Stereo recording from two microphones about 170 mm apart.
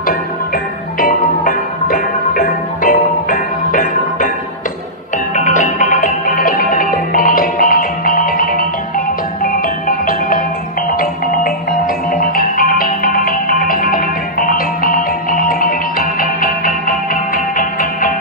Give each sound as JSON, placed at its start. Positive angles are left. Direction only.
{"t": 0.9, "sound": "music", "side_deg": 55}
{"t": 5.3, "sound": "music", "side_deg": 45}
{"t": 12.1, "sound": "music", "side_deg": 55}